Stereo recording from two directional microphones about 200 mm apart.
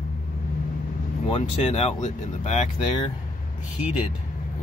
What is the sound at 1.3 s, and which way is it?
Speech, 30° left (ahead or behind).